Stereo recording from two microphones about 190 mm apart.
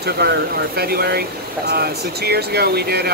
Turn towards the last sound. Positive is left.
turn(degrees=-55)  # may be behind; listen again after turning